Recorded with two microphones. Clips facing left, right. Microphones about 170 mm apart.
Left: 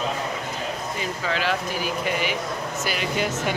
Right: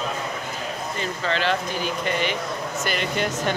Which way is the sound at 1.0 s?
5° left (ahead or behind).